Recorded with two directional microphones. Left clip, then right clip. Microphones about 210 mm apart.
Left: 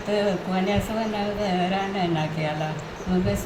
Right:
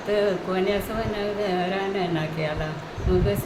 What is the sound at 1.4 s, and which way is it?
A woman's voice, 15° right (ahead or behind).